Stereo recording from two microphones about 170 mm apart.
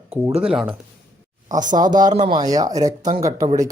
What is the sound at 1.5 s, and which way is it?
Speech, 50° right (ahead or behind).